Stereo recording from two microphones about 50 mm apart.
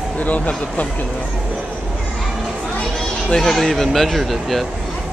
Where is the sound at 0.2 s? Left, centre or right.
Left.